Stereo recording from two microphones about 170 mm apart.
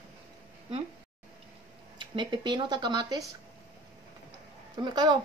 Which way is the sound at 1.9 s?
30° right (ahead or behind).